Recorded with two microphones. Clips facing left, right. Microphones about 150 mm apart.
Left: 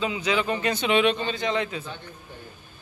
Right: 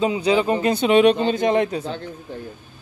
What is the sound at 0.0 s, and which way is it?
Speech, 35° right (ahead or behind).